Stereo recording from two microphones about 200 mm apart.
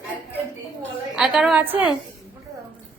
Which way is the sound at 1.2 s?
5° right (ahead or behind).